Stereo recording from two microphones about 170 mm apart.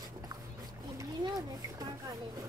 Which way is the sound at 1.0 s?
20° right (ahead or behind).